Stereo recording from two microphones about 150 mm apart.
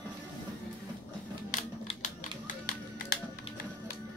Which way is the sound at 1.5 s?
55° left (ahead or behind).